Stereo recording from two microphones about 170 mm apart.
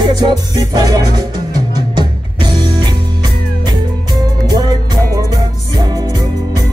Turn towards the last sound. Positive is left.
turn(degrees=-25)  # may be behind; listen again after turning